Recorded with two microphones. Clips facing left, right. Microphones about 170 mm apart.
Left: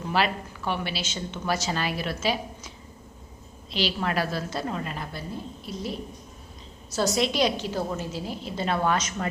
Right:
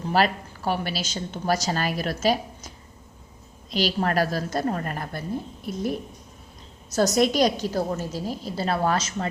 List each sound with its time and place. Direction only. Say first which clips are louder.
0.0 s a woman's voice: right 3 dB; 40° right (ahead or behind)
6.9 s a woman's voice: right 4 dB; 40° right (ahead or behind)